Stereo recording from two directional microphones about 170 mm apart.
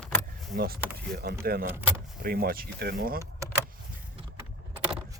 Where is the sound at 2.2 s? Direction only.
60° right (ahead or behind).